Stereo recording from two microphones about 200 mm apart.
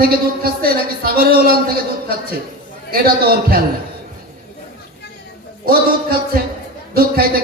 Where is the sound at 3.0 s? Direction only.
50° right (ahead or behind).